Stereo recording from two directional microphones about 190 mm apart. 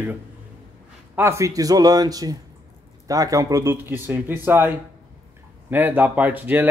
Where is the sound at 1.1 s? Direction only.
15° right (ahead or behind).